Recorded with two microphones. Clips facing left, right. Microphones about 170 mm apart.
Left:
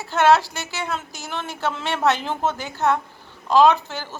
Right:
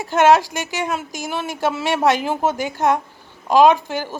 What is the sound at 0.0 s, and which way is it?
A woman's voice, 15° right (ahead or behind).